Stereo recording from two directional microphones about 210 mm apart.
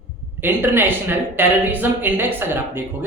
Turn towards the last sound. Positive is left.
turn(degrees=-10)  # may be behind; listen again after turning